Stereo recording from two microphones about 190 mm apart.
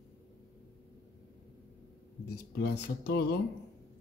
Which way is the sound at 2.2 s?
60° left (ahead or behind).